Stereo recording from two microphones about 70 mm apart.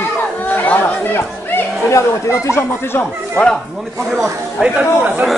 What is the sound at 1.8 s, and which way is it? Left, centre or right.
Speech, left.